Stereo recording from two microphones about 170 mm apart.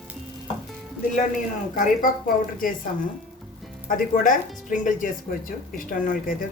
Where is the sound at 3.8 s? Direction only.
50° left (ahead or behind).